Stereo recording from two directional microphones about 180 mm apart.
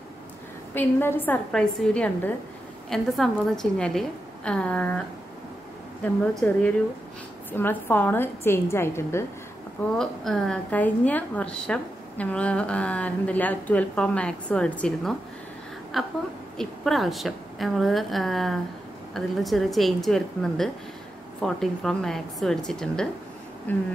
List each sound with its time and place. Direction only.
0.7 s a woman's voice: 10° left (ahead or behind)
6.4 s a woman's voice: 10° left (ahead or behind)
9.9 s a woman's voice: centre (ahead or behind)